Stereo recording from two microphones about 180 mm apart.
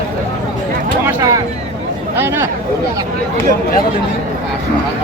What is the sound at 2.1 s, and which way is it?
Speech, 10° right (ahead or behind).